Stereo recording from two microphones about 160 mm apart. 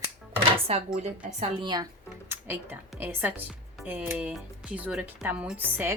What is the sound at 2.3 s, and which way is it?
Speech, 15° right (ahead or behind).